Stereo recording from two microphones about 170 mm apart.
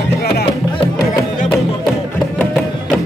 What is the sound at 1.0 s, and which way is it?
Music, 20° left (ahead or behind).